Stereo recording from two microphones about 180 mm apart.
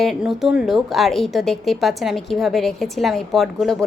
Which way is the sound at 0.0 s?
Centre (ahead or behind).